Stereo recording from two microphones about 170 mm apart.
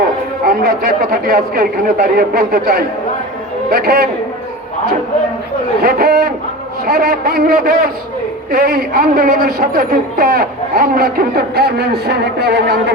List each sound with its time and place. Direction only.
0.4 s a woman's voice: 60° right (ahead or behind)
5.8 s a woman's voice: 60° right (ahead or behind)